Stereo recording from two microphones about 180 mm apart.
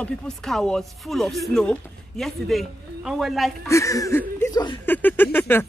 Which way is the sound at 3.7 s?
15° left (ahead or behind).